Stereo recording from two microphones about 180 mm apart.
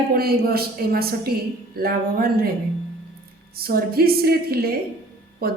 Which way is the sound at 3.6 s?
55° right (ahead or behind).